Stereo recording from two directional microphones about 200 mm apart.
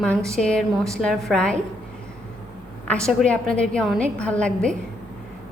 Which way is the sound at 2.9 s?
5° left (ahead or behind).